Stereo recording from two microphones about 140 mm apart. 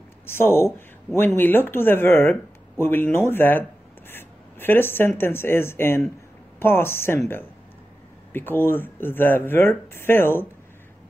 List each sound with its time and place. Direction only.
0.3 s speech: 15° left (ahead or behind)
8.3 s speech: 15° left (ahead or behind)